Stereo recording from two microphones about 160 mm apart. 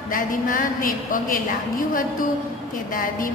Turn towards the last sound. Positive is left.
turn(degrees=60)  # may be behind; listen again after turning